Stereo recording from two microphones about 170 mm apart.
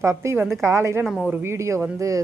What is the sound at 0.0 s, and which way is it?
Speech, 15° right (ahead or behind).